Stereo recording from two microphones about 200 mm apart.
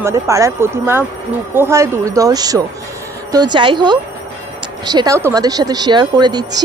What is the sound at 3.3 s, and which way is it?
Speech, 20° right (ahead or behind).